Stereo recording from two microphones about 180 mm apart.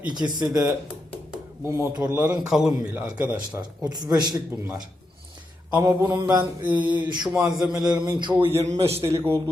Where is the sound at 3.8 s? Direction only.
20° right (ahead or behind).